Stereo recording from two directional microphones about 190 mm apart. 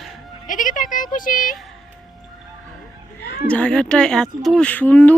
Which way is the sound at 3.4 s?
5° left (ahead or behind).